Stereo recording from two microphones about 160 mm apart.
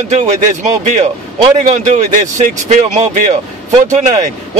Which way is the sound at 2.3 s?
50° right (ahead or behind).